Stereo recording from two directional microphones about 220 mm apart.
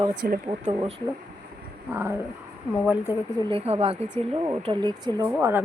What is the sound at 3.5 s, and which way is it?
Speech, 25° right (ahead or behind).